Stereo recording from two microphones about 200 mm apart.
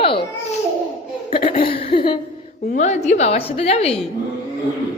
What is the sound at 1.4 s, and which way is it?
Speech, 30° left (ahead or behind).